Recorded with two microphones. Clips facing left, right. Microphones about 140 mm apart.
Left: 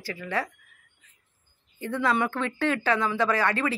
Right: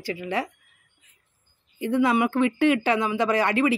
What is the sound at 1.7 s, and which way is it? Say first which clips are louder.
Speech: right 5 dB; 15° right (ahead or behind).